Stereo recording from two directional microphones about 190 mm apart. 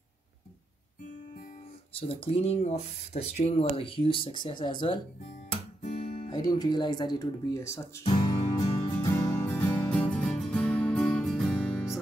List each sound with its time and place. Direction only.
2.0 s speech: 30° left (ahead or behind)
5.5 s guitar: 35° left (ahead or behind)
6.3 s speech: 20° left (ahead or behind)
8.0 s music: 25° left (ahead or behind); by 12.0 s centre (ahead or behind)